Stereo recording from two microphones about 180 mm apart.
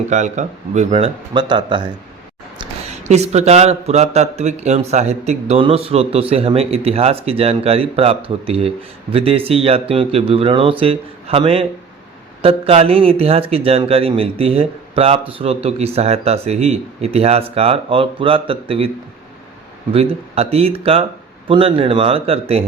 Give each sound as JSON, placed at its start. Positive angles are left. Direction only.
{"t": 0.1, "sound": "speech", "side_deg": -40}
{"t": 3.0, "sound": "speech", "side_deg": -40}
{"t": 19.9, "sound": "speech", "side_deg": -35}